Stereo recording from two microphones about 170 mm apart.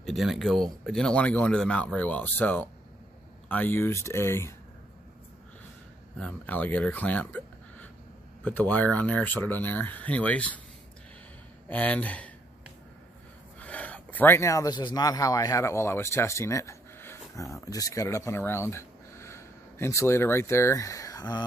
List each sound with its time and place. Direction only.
0.0 s speech: centre (ahead or behind); by 4.6 s 15° left (ahead or behind)
6.1 s speech: 10° left (ahead or behind)
11.7 s speech: 10° left (ahead or behind)
13.6 s speech: 10° left (ahead or behind)